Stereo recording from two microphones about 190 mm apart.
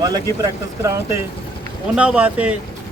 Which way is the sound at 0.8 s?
15° right (ahead or behind).